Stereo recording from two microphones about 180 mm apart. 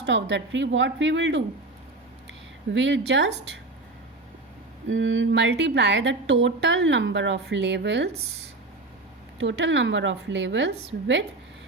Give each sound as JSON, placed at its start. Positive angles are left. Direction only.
{"t": 0.0, "sound": "speech", "side_deg": -80}
{"t": 2.7, "sound": "a woman's voice", "side_deg": -85}
{"t": 4.9, "sound": "a woman's voice", "side_deg": -90}
{"t": 9.4, "sound": "speech", "side_deg": -85}